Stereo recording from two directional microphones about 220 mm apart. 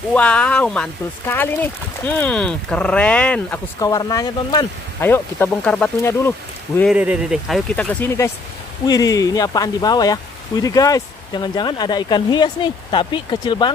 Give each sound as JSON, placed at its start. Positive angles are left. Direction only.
{"t": 0.1, "sound": "speech", "side_deg": 5}
{"t": 6.8, "sound": "speech", "side_deg": -5}